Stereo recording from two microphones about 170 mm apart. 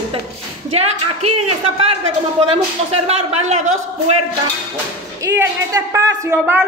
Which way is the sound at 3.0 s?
40° right (ahead or behind).